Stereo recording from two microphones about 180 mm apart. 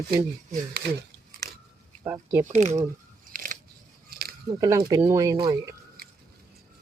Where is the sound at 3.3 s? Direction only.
50° right (ahead or behind).